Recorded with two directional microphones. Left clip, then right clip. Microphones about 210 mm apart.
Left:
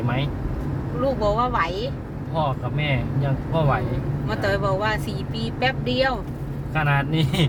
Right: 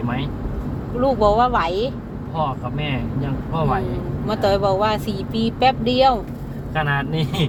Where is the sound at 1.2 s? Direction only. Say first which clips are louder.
Right 6 dB; 25° right (ahead or behind).